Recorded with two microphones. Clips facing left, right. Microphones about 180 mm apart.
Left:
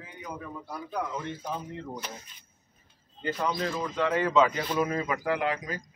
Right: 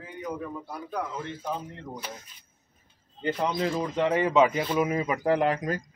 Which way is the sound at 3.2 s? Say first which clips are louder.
Right 3 dB; 25° right (ahead or behind).